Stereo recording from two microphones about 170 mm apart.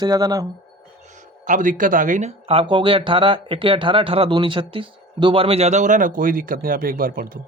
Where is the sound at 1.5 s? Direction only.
50° right (ahead or behind).